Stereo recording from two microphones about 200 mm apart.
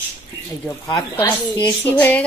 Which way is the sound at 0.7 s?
10° left (ahead or behind).